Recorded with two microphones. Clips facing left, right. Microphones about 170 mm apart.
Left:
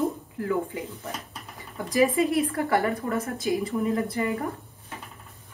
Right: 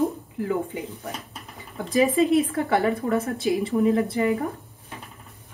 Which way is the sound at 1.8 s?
20° right (ahead or behind).